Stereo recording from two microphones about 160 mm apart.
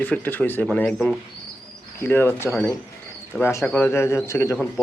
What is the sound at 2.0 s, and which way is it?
Speech, 15° left (ahead or behind).